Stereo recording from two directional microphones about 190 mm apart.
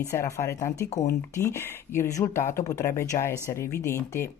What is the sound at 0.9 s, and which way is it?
Speech, 40° left (ahead or behind).